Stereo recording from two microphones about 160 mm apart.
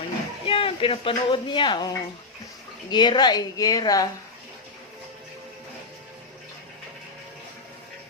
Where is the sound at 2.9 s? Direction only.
25° left (ahead or behind).